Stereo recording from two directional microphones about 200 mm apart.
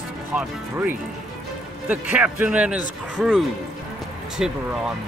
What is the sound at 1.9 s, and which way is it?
Speech, 10° right (ahead or behind).